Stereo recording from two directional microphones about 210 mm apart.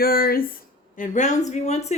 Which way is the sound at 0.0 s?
45° left (ahead or behind).